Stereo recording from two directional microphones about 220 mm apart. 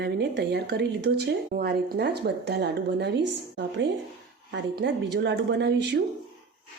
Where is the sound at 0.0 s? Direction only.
50° right (ahead or behind).